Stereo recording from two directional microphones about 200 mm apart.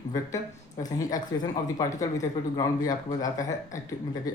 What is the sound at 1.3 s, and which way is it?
Speech, 15° left (ahead or behind).